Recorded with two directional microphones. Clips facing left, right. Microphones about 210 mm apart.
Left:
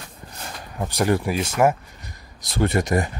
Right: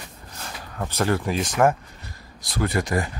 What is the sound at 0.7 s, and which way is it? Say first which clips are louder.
Speech: left 2 dB; 15° left (ahead or behind).